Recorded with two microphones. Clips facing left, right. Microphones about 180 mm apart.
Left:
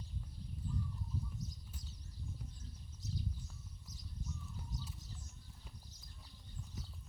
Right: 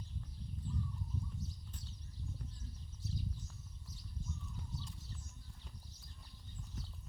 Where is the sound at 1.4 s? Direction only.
40° left (ahead or behind).